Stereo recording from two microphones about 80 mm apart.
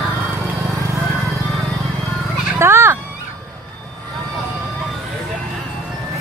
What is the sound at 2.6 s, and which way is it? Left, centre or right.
Children playing, right.